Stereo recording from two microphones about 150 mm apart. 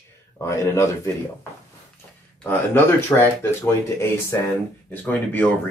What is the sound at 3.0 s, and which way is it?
Speech, 15° left (ahead or behind).